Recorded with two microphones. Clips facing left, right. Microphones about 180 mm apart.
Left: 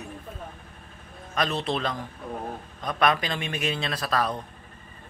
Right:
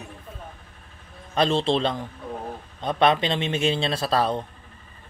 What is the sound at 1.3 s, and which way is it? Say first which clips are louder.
A man's voice: right 6 dB; 30° right (ahead or behind).